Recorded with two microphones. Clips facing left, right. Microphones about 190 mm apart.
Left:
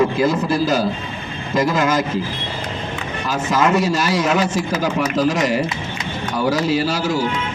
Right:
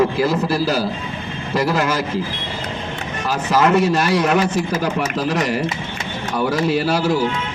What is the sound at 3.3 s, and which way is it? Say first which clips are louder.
A man's voice: right 1 dB; 65° right (ahead or behind).